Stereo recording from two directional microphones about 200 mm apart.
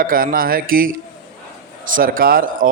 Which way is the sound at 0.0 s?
45° right (ahead or behind).